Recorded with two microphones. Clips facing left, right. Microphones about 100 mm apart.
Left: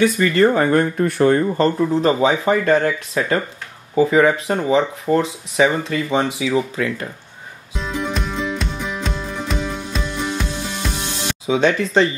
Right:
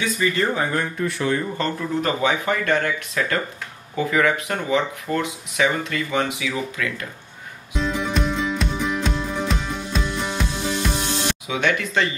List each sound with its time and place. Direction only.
0.0 s speech: 55° left (ahead or behind)
2.0 s speech: 30° left (ahead or behind)
7.7 s music: centre (ahead or behind)
11.4 s speech: 30° left (ahead or behind)